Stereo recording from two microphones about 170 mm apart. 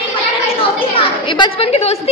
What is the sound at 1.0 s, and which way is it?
A woman's voice, 30° left (ahead or behind).